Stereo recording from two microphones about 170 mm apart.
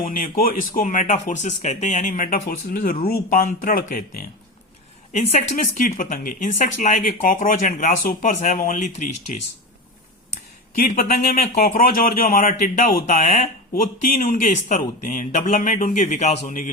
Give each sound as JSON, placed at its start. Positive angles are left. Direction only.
{"t": 0.0, "sound": "speech", "side_deg": 55}
{"t": 10.8, "sound": "speech", "side_deg": 55}